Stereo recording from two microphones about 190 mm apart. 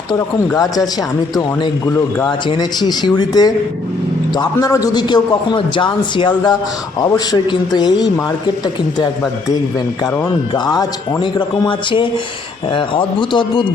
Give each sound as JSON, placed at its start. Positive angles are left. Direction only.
{"t": 0.5, "sound": "a man's voice", "side_deg": 20}
{"t": 9.5, "sound": "a man's voice", "side_deg": 20}